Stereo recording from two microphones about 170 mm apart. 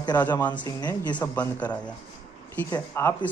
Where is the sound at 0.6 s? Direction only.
25° left (ahead or behind).